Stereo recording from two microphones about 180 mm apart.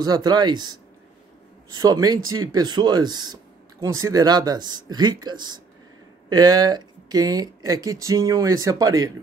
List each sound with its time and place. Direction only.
0.0 s speech: 20° right (ahead or behind)